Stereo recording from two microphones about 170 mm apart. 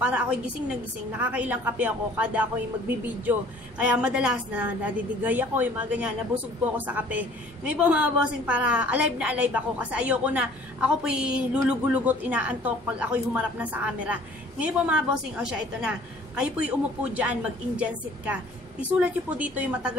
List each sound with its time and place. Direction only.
0.0 s a woman's voice: 5° right (ahead or behind)